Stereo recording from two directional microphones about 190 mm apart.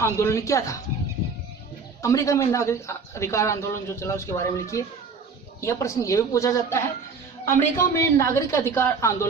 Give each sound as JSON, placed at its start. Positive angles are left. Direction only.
{"t": 0.0, "sound": "a man's voice", "side_deg": 15}
{"t": 2.0, "sound": "a man's voice", "side_deg": 15}